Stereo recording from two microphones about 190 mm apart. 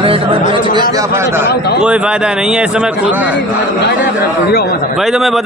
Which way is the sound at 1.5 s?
60° left (ahead or behind).